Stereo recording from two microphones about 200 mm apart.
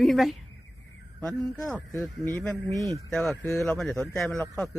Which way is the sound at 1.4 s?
15° left (ahead or behind).